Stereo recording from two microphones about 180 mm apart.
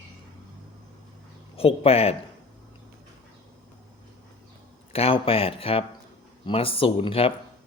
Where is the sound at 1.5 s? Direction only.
30° left (ahead or behind).